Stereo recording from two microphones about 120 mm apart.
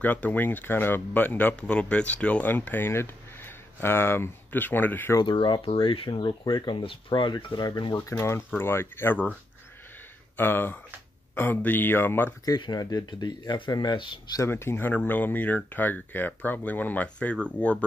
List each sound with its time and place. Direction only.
0.0 s speech: 15° left (ahead or behind)
5.2 s speech: 40° left (ahead or behind)
8.0 s speech: 20° left (ahead or behind)
10.3 s speech: 15° left (ahead or behind)
12.4 s speech: 35° left (ahead or behind)
14.4 s speech: 20° left (ahead or behind)